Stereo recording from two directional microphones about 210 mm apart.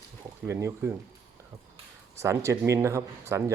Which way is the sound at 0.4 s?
15° right (ahead or behind).